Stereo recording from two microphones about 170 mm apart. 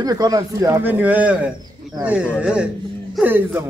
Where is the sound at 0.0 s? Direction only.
20° right (ahead or behind).